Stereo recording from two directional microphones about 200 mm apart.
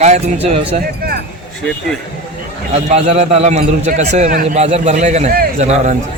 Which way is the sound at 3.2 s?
30° right (ahead or behind).